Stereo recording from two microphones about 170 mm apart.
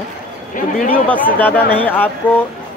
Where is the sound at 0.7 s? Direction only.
55° left (ahead or behind).